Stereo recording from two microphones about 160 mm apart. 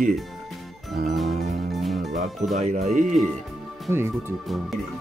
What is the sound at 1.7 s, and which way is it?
Music, centre (ahead or behind).